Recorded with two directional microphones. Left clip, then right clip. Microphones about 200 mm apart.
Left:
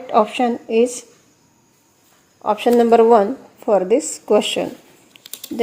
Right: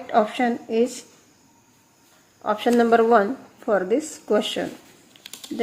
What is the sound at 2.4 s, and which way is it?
Speech, 15° left (ahead or behind).